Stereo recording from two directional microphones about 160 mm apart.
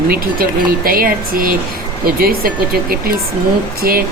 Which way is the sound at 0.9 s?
65° right (ahead or behind).